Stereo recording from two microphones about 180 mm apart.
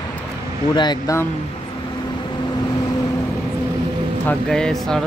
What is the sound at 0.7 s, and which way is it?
Speech, 20° left (ahead or behind).